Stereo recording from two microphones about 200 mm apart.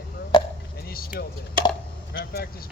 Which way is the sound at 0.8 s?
50° left (ahead or behind).